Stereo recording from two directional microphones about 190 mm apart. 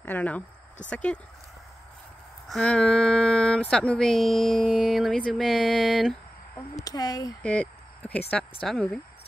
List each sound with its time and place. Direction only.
0.0 s speech: 10° left (ahead or behind)
2.4 s speech: centre (ahead or behind)
6.7 s speech: 20° left (ahead or behind)
7.4 s a sound: 5° left (ahead or behind)
8.3 s speech: 5° left (ahead or behind)